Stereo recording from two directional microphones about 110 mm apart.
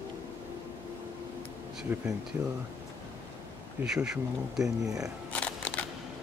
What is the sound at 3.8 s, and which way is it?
Speech, 5° right (ahead or behind).